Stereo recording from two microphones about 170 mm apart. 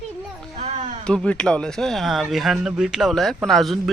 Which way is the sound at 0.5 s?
40° right (ahead or behind).